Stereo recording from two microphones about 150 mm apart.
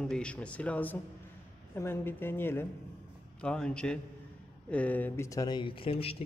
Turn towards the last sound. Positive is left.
turn(degrees=40)  # may be behind; listen again after turning